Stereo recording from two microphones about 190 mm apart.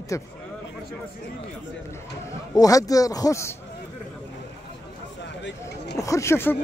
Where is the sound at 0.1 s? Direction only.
15° left (ahead or behind).